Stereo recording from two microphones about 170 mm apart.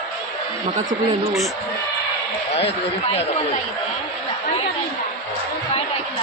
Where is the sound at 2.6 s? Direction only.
35° left (ahead or behind).